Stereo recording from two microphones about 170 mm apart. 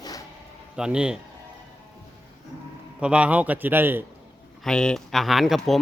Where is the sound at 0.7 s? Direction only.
5° right (ahead or behind).